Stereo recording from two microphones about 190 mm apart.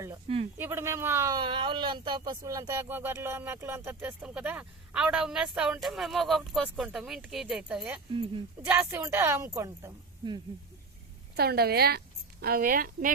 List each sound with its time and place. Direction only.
0.5 s speech: 10° right (ahead or behind)
8.1 s speech: 25° right (ahead or behind)
8.6 s speech: 10° right (ahead or behind)
11.3 s a woman's voice: 55° right (ahead or behind)